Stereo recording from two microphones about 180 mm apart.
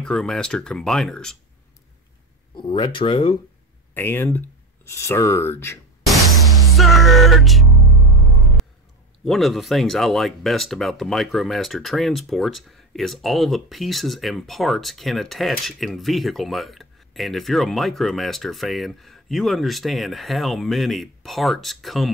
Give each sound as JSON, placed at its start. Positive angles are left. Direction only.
{"t": 0.0, "sound": "speech", "side_deg": 5}
{"t": 2.5, "sound": "speech", "side_deg": 25}
{"t": 3.9, "sound": "speech", "side_deg": 10}
{"t": 6.0, "sound": "music", "side_deg": 0}
{"t": 9.2, "sound": "speech", "side_deg": 0}